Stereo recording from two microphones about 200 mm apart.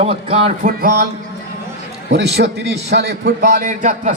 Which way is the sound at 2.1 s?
55° right (ahead or behind).